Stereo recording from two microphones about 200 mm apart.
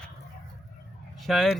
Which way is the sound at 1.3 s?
Centre (ahead or behind).